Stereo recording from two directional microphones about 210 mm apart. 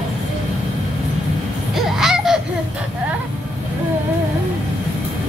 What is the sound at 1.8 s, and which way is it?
Laughter, centre (ahead or behind).